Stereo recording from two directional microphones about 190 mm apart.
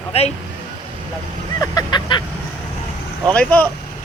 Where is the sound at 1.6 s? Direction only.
20° left (ahead or behind).